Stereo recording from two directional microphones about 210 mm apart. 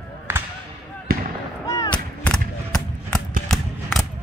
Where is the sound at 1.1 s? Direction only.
45° right (ahead or behind).